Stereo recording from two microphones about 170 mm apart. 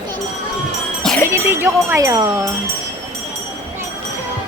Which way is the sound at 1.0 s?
5° left (ahead or behind).